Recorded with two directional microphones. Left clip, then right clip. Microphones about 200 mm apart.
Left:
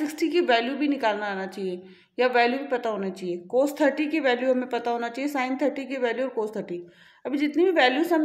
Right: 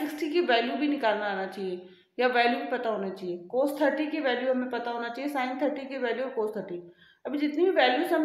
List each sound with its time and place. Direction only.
0.0 s a woman's voice: 30° left (ahead or behind)